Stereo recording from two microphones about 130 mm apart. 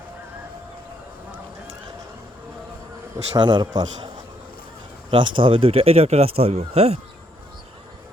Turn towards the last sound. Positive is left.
turn(degrees=-55)  # may be behind; listen again after turning